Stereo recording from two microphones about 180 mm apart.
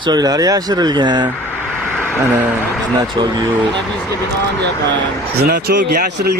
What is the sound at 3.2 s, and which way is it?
Speech, 25° right (ahead or behind).